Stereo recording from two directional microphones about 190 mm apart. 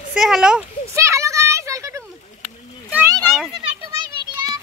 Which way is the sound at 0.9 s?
15° right (ahead or behind).